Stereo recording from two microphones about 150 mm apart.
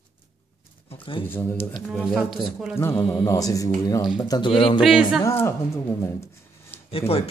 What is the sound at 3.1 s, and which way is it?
Speech, 20° left (ahead or behind).